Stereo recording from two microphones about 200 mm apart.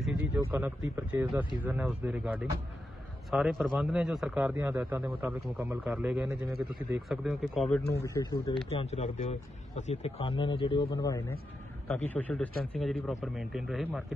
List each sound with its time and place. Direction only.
0.0 s a man's voice: 10° right (ahead or behind)
7.9 s speech: 15° left (ahead or behind)
8.6 s a man's voice: 30° left (ahead or behind); by 14.0 s centre (ahead or behind)